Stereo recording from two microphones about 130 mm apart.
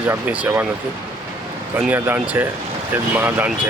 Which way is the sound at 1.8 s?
15° right (ahead or behind).